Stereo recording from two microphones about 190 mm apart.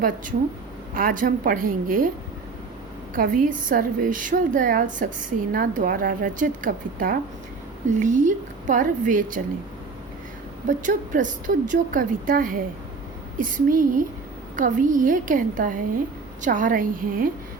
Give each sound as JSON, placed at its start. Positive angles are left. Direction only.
{"t": 0.9, "sound": "speech", "side_deg": -45}
{"t": 3.2, "sound": "speech", "side_deg": -45}
{"t": 10.7, "sound": "speech", "side_deg": -45}